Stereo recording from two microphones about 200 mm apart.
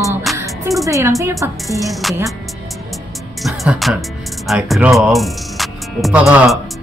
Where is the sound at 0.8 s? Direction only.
15° right (ahead or behind).